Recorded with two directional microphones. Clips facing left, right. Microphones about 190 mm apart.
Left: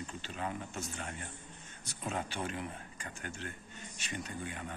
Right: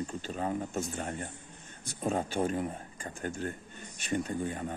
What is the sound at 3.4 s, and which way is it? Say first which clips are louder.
Speech: right 8 dB; 45° right (ahead or behind).